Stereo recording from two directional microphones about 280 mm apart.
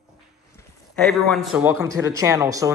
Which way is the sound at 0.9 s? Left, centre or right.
Centre.